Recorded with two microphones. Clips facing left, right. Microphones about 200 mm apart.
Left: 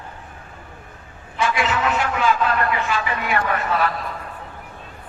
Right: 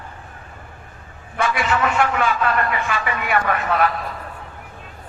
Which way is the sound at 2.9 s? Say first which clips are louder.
Right 1 dB; 55° right (ahead or behind).